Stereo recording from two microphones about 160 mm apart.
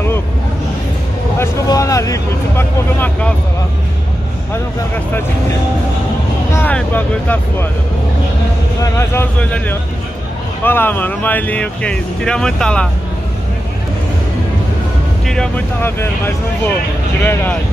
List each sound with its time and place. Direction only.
1.4 s speech: 20° left (ahead or behind)
6.5 s speech: 10° left (ahead or behind)
8.8 s speech: 15° left (ahead or behind)
15.2 s speech: 5° left (ahead or behind)